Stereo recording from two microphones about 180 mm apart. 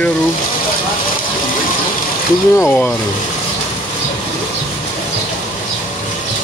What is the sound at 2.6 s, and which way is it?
Speech, 10° left (ahead or behind).